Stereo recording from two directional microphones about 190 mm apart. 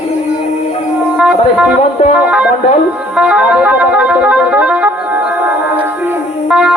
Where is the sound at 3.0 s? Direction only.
5° right (ahead or behind).